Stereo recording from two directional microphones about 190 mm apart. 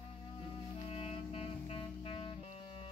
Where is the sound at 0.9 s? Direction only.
30° left (ahead or behind).